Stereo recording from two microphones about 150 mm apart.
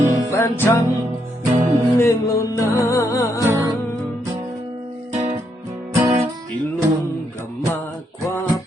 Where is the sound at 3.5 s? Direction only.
20° right (ahead or behind).